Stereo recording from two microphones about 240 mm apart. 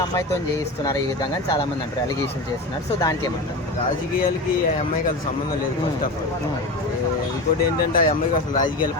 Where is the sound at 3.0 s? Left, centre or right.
Centre.